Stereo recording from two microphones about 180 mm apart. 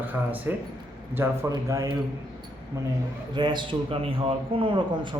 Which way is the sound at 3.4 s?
25° right (ahead or behind).